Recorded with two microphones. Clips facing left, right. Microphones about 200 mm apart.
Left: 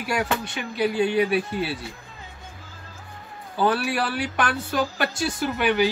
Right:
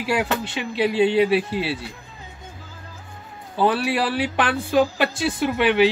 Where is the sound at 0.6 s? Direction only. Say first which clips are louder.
Right 4 dB; 25° right (ahead or behind).